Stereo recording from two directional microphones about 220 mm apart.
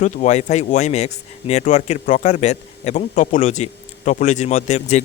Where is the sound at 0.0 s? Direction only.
35° left (ahead or behind).